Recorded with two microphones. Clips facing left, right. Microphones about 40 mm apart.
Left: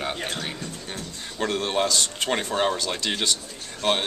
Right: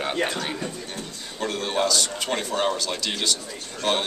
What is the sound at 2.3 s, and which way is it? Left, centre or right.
Speech, centre.